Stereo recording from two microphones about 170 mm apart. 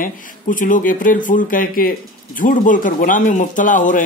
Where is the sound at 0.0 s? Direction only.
50° left (ahead or behind).